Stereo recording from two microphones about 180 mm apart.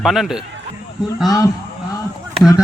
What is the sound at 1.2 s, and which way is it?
Speech, 20° left (ahead or behind).